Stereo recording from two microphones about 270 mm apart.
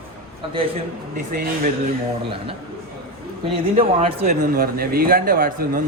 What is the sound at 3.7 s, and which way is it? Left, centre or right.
Speech, right.